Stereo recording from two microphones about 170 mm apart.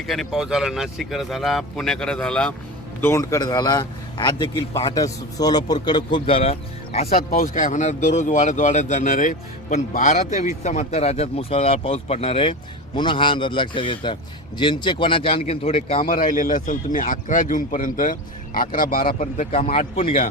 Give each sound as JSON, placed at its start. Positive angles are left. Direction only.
{"t": 0.1, "sound": "speech", "side_deg": 0}
{"t": 3.0, "sound": "a man's voice", "side_deg": 15}
{"t": 7.3, "sound": "a man's voice", "side_deg": 60}
{"t": 16.0, "sound": "speech", "side_deg": 55}
{"t": 19.5, "sound": "a man's voice", "side_deg": 35}